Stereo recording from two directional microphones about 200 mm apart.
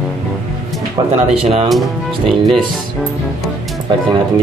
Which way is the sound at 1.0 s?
20° right (ahead or behind).